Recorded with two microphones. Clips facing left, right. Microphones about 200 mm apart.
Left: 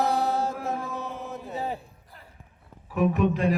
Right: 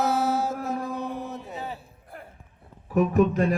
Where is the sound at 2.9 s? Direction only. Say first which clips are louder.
Right 3 dB; 40° right (ahead or behind).